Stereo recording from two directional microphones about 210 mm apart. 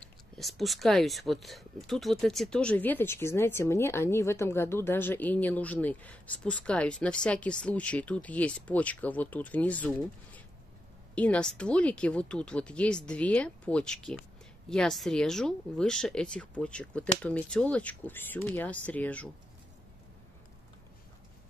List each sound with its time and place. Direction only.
0.4 s speech: centre (ahead or behind)